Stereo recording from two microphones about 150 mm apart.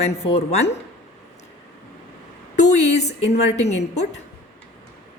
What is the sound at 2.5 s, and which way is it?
A woman's voice, 50° left (ahead or behind).